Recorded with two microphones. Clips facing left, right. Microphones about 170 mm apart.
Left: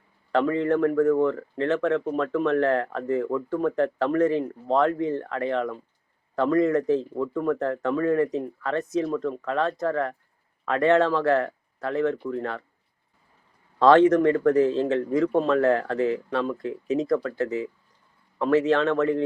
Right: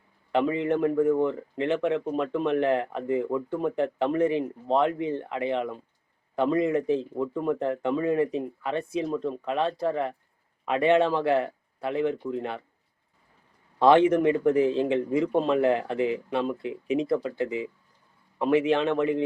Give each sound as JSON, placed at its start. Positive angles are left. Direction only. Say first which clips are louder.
{"t": 0.3, "sound": "speech", "louder": "left 2 dB", "side_deg": -15}
{"t": 13.7, "sound": "speech", "louder": "left 2 dB", "side_deg": -10}